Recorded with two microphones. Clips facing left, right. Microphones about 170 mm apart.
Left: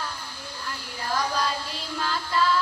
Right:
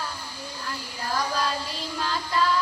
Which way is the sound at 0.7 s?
10° right (ahead or behind).